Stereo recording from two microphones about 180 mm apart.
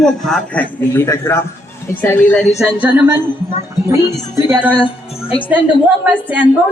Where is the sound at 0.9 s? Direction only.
15° left (ahead or behind); by 4.6 s 15° right (ahead or behind).